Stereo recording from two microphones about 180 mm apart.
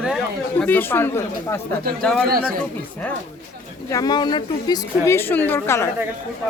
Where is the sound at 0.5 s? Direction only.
10° left (ahead or behind).